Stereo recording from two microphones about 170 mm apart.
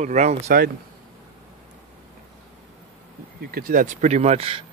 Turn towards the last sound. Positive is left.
turn(degrees=-35)  # may be behind; listen again after turning